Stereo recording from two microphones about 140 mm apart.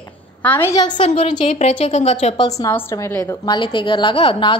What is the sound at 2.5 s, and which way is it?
A woman's voice, 20° left (ahead or behind).